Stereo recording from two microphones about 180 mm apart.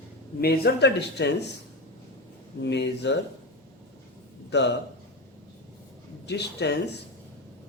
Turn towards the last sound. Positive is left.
turn(degrees=70)  # may be behind; listen again after turning